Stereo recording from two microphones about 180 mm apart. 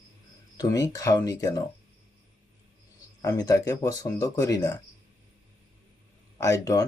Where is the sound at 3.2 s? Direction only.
20° left (ahead or behind).